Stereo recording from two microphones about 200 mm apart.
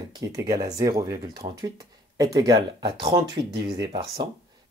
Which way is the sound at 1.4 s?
30° right (ahead or behind).